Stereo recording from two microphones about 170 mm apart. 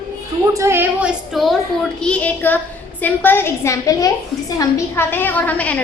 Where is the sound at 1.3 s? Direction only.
Centre (ahead or behind).